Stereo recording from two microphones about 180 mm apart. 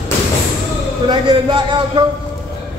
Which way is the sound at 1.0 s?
25° right (ahead or behind).